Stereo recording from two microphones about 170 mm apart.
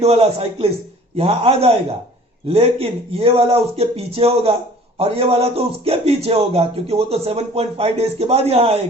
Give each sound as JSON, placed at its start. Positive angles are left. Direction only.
{"t": 0.0, "sound": "speech", "side_deg": -35}